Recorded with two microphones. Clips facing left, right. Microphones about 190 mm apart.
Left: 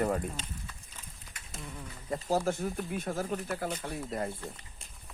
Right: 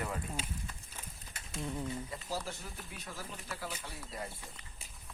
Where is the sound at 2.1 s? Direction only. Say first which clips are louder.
Left 11 dB; 50° left (ahead or behind).